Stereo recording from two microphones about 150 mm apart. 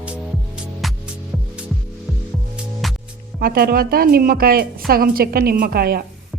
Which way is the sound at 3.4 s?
90° right.